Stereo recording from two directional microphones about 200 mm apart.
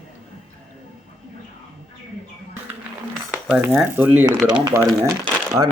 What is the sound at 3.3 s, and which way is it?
Speech, 5° right (ahead or behind).